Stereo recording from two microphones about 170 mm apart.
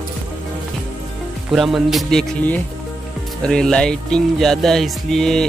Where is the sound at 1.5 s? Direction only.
Centre (ahead or behind).